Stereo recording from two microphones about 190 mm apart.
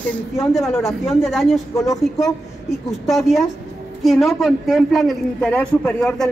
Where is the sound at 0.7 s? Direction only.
15° left (ahead or behind).